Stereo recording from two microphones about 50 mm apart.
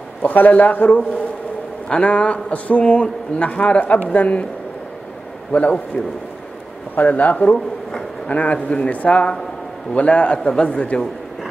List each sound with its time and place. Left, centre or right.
0.2 s a man's voice: left
1.9 s a man's voice: left
5.5 s a man's voice: left
7.0 s a man's voice: left